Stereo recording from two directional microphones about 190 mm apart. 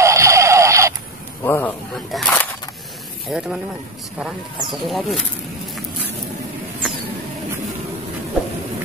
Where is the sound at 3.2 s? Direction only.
Centre (ahead or behind).